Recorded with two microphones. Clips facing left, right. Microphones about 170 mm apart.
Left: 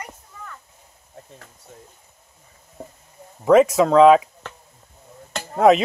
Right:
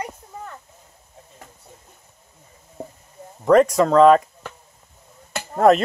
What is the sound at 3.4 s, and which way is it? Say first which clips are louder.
Speech: left 1 dB; centre (ahead or behind).